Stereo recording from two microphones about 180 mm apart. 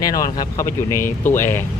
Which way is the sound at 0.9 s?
15° left (ahead or behind).